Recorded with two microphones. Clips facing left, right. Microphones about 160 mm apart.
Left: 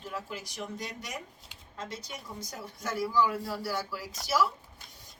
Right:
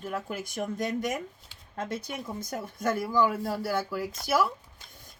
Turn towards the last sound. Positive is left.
turn(degrees=-55)  # may be behind; listen again after turning